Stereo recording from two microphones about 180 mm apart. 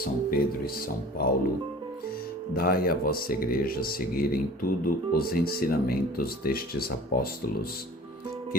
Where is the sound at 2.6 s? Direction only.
55° left (ahead or behind).